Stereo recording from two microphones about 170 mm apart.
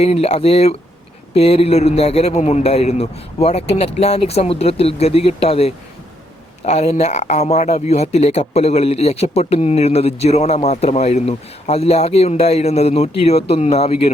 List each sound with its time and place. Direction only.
0.0 s speech: 35° left (ahead or behind)